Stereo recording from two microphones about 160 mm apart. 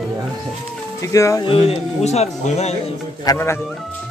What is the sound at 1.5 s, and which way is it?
Speech, 35° left (ahead or behind).